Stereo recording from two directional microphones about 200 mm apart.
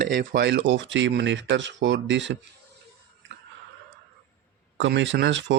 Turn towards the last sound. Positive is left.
turn(degrees=-65)  # may be behind; listen again after turning